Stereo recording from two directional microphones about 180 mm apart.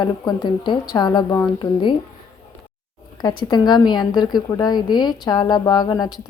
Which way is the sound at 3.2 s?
20° left (ahead or behind).